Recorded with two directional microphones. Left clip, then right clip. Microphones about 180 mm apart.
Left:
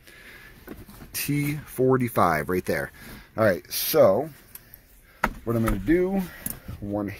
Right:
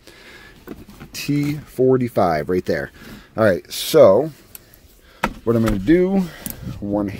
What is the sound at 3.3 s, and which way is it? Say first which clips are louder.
Speech: right 5 dB; 30° right (ahead or behind).